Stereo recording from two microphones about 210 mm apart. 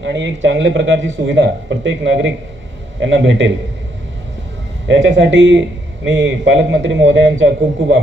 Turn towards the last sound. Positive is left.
turn(degrees=-60)  # may be behind; listen again after turning